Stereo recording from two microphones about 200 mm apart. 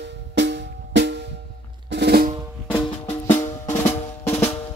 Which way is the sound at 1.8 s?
55° right (ahead or behind).